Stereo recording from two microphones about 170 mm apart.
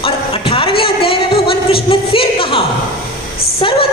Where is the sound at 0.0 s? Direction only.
35° left (ahead or behind).